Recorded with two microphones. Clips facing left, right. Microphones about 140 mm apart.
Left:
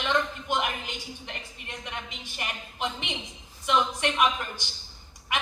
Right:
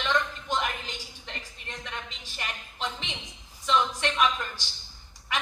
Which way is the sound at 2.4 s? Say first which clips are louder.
Left 2 dB; 15° left (ahead or behind).